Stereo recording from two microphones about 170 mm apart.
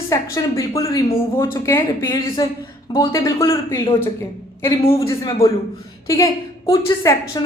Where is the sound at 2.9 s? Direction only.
25° left (ahead or behind).